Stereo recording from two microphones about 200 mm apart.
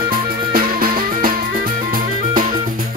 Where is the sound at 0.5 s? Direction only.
45° right (ahead or behind).